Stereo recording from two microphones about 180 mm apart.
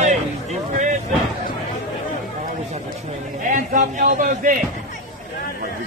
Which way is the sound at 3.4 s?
50° right (ahead or behind).